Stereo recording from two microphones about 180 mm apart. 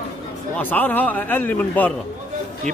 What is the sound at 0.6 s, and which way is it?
A man's voice, 10° left (ahead or behind).